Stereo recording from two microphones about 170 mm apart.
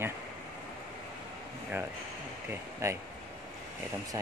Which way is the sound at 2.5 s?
15° right (ahead or behind).